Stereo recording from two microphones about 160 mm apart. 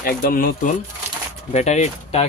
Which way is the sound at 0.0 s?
65° left (ahead or behind).